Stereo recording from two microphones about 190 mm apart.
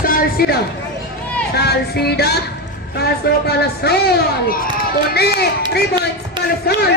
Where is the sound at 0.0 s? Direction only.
50° left (ahead or behind).